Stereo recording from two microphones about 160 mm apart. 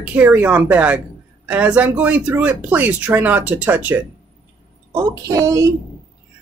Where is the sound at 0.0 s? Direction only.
10° right (ahead or behind).